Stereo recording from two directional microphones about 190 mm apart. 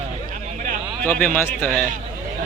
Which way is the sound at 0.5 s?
40° right (ahead or behind).